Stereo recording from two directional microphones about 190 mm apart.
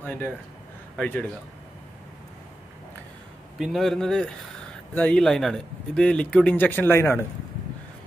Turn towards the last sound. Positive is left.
turn(degrees=10)  # may be behind; listen again after turning